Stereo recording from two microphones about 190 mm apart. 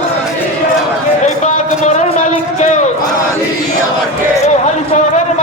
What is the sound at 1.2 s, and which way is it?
A man's voice, 40° left (ahead or behind).